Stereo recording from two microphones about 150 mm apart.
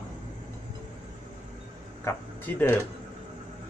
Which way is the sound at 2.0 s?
15° left (ahead or behind).